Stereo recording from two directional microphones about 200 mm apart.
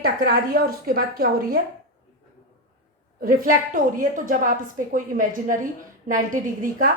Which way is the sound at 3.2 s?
40° right (ahead or behind).